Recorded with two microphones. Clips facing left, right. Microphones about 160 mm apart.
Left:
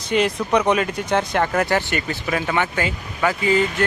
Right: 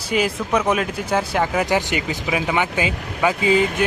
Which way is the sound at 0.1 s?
5° right (ahead or behind).